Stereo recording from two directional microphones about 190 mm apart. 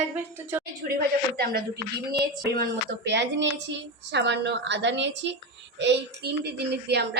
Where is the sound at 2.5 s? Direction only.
60° right (ahead or behind).